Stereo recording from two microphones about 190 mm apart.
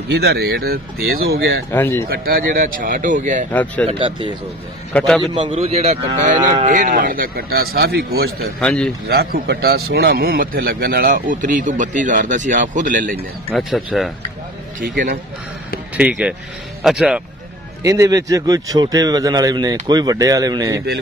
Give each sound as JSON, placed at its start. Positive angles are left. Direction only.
{"t": 0.1, "sound": "speech", "side_deg": -60}
{"t": 1.7, "sound": "speech", "side_deg": 10}
{"t": 2.0, "sound": "a man's voice", "side_deg": -55}
{"t": 3.8, "sound": "a man's voice", "side_deg": -25}
{"t": 4.9, "sound": "speech", "side_deg": 5}
{"t": 5.3, "sound": "cattle", "side_deg": -25}
{"t": 6.6, "sound": "a man's voice", "side_deg": -45}
{"t": 8.5, "sound": "speech", "side_deg": 5}
{"t": 9.1, "sound": "a man's voice", "side_deg": -55}
{"t": 13.1, "sound": "speech", "side_deg": 5}
{"t": 14.8, "sound": "a man's voice", "side_deg": -45}
{"t": 16.0, "sound": "speech", "side_deg": -5}
{"t": 17.8, "sound": "a man's voice", "side_deg": -15}